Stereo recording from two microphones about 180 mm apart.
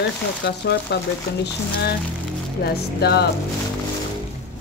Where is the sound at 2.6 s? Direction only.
60° left (ahead or behind).